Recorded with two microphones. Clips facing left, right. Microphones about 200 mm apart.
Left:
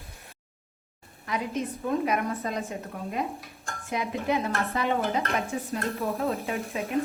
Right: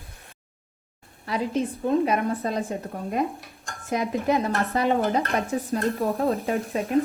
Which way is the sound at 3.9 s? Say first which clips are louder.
Right 4 dB; 40° right (ahead or behind).